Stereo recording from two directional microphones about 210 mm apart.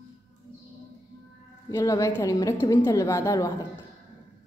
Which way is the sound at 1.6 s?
15° left (ahead or behind).